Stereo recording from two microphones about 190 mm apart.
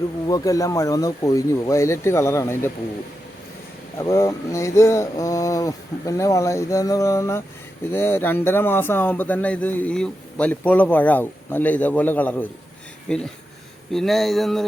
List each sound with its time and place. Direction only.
0.3 s speech: 20° left (ahead or behind)
3.9 s speech: 15° left (ahead or behind); by 14.6 s centre (ahead or behind)